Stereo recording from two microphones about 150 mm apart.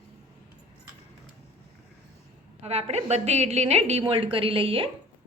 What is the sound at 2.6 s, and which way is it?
A woman's voice, 45° right (ahead or behind).